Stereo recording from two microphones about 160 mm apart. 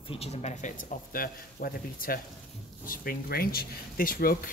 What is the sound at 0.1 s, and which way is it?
Speech, 40° left (ahead or behind).